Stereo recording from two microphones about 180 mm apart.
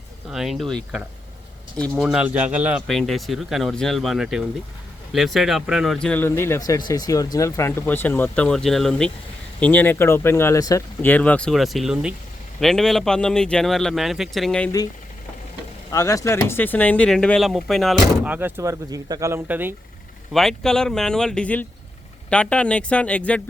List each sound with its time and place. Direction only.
0.3 s speech: centre (ahead or behind)
1.8 s speech: 5° right (ahead or behind)
15.9 s speech: 20° left (ahead or behind); by 18.3 s centre (ahead or behind)
18.3 s speech: 10° right (ahead or behind)
20.3 s speech: centre (ahead or behind)